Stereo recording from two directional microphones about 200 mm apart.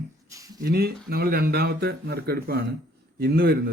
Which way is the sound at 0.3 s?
15° right (ahead or behind).